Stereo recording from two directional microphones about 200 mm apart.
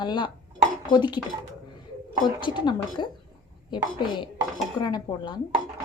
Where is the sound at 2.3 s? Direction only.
25° left (ahead or behind).